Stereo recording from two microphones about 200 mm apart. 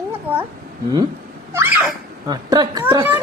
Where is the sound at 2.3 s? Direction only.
20° right (ahead or behind).